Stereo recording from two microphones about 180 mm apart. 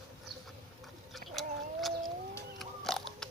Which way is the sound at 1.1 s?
Centre (ahead or behind).